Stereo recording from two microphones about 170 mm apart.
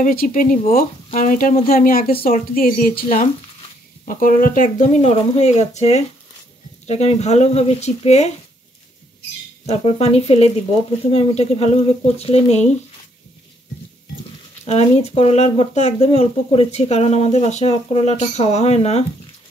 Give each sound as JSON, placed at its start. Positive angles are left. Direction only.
{"t": 0.0, "sound": "a woman's voice", "side_deg": 55}
{"t": 4.1, "sound": "speech", "side_deg": 55}
{"t": 9.7, "sound": "speech", "side_deg": 40}
{"t": 14.7, "sound": "speech", "side_deg": 40}